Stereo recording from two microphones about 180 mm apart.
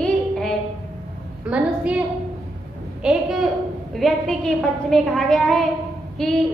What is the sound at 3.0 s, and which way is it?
A woman's voice, centre (ahead or behind).